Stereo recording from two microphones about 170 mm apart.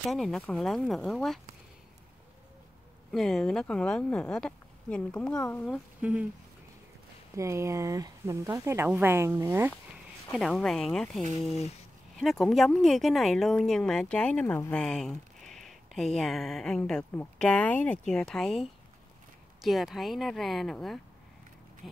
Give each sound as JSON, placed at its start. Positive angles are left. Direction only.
{"t": 0.1, "sound": "speech", "side_deg": 0}
{"t": 3.1, "sound": "speech", "side_deg": 0}
{"t": 5.9, "sound": "speech", "side_deg": -10}
{"t": 7.3, "sound": "speech", "side_deg": -15}
{"t": 10.3, "sound": "speech", "side_deg": 0}